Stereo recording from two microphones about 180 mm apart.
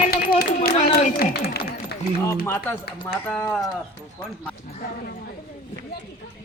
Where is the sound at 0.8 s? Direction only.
35° left (ahead or behind).